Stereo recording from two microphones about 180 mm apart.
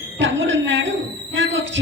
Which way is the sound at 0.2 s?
90° right.